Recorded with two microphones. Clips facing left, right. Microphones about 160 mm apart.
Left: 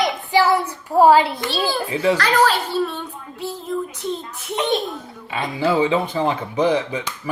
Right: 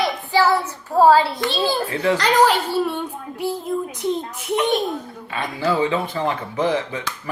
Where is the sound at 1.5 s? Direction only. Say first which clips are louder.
Right 1 dB; 20° right (ahead or behind).